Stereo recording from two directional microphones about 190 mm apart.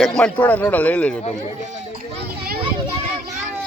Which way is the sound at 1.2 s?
35° left (ahead or behind).